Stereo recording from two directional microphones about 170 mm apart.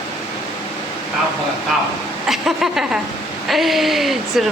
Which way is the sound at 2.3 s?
Centre (ahead or behind).